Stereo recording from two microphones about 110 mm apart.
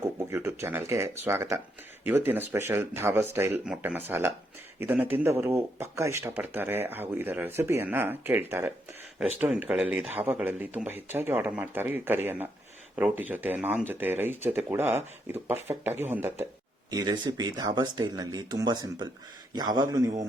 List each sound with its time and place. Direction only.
0.3 s speech: 25° right (ahead or behind)
16.9 s speech: 40° right (ahead or behind)